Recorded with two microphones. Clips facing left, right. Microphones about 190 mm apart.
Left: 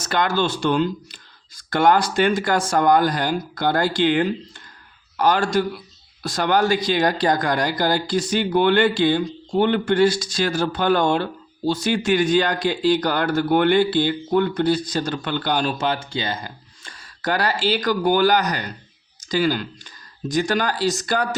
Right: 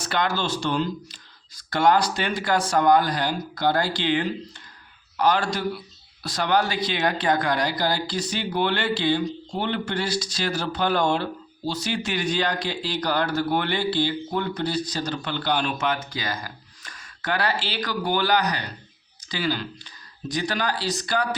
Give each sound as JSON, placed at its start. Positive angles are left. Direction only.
{"t": 0.0, "sound": "speech", "side_deg": 45}